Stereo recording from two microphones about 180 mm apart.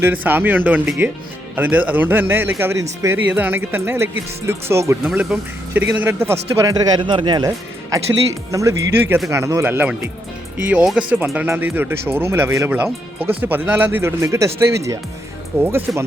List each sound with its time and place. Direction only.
0.0 s speech: 10° right (ahead or behind)